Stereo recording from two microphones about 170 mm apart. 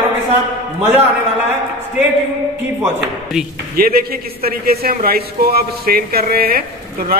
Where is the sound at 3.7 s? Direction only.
60° right (ahead or behind).